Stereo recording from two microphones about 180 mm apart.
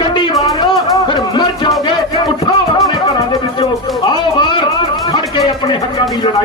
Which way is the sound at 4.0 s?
25° left (ahead or behind).